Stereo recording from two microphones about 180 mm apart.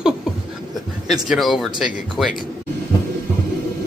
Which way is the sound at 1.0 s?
Centre (ahead or behind).